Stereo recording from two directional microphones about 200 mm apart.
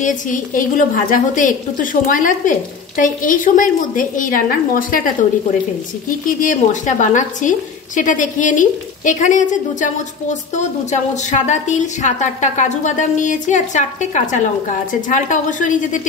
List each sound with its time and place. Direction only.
0.0 s a woman's voice: 40° left (ahead or behind)